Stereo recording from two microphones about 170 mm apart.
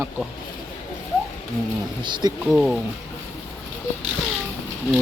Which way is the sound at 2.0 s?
25° right (ahead or behind).